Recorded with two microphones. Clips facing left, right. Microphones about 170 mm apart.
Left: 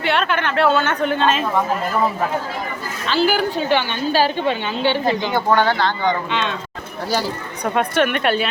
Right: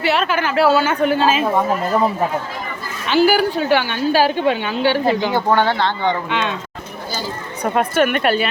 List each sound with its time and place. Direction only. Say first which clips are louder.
0.0 s a woman's voice: right 2 dB; 5° right (ahead or behind)
3.1 s a woman's voice: right 4 dB; 10° right (ahead or behind)
5.5 s speech: right 1 dB; 25° right (ahead or behind)
6.3 s a woman's voice: right 1 dB; 5° right (ahead or behind)
7.6 s a woman's voice: right 2 dB; 5° right (ahead or behind)